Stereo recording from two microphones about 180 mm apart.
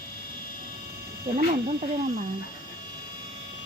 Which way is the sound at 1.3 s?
40° right (ahead or behind).